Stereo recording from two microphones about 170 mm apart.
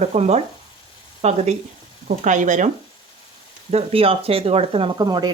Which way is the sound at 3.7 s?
35° right (ahead or behind).